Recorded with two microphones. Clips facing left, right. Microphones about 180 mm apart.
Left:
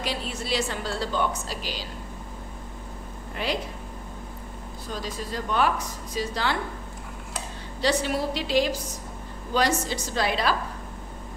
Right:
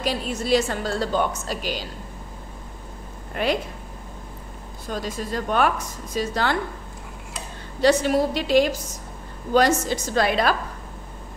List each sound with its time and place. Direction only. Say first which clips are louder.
0.0 s a woman's voice: right 5 dB; 45° right (ahead or behind)
3.4 s a woman's voice: right 6 dB; 50° right (ahead or behind)
5.0 s a woman's voice: right 4 dB; 50° right (ahead or behind)
7.8 s a woman's voice: right 6 dB; 45° right (ahead or behind)